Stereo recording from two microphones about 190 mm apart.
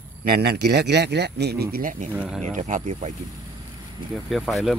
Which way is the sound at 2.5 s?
40° right (ahead or behind).